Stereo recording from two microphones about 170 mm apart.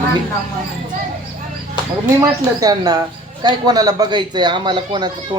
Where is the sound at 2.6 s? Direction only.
20° right (ahead or behind).